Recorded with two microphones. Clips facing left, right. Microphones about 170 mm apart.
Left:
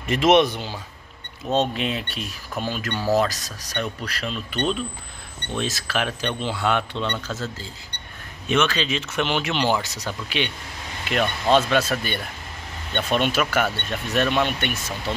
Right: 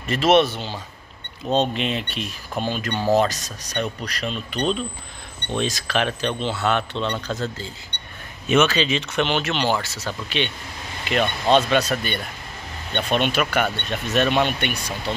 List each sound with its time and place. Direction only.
0.0 s speech: 15° left (ahead or behind)
2.9 s speech: 25° right (ahead or behind)
3.7 s speech: 5° left (ahead or behind)